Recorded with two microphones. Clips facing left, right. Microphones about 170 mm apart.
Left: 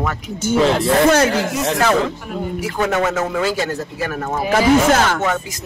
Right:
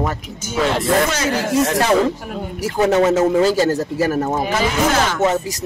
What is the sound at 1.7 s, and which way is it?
A man's voice, 40° right (ahead or behind).